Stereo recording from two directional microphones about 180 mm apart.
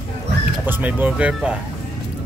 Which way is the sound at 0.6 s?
10° right (ahead or behind).